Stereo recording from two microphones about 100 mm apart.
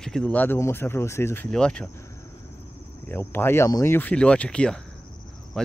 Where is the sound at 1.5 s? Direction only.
10° left (ahead or behind).